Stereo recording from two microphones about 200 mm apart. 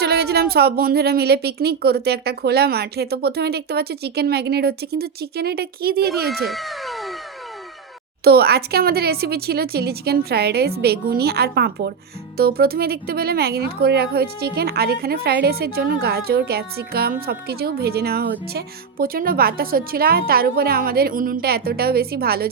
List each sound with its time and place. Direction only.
0.0 s speech: 55° right (ahead or behind)
6.3 s cat: centre (ahead or behind)
8.2 s speech: 50° right (ahead or behind)